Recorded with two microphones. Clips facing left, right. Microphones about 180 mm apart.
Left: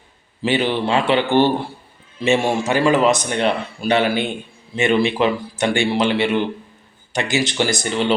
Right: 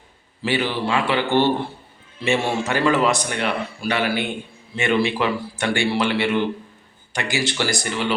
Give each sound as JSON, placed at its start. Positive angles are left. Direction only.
{"t": 0.4, "sound": "a man's voice", "side_deg": 20}